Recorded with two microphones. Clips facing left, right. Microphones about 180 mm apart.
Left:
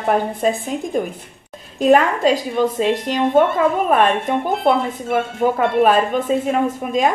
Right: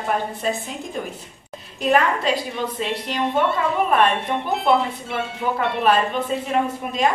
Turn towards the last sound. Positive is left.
turn(degrees=45)  # may be behind; listen again after turning